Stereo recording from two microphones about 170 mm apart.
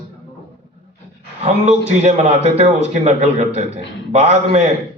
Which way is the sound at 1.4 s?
40° right (ahead or behind).